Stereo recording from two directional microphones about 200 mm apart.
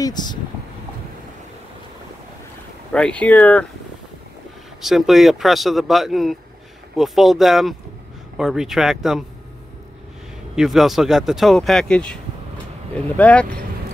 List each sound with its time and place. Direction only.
0.0 s speech: 20° left (ahead or behind)
2.9 s speech: 5° left (ahead or behind)
4.8 s speech: centre (ahead or behind)
10.5 s speech: centre (ahead or behind)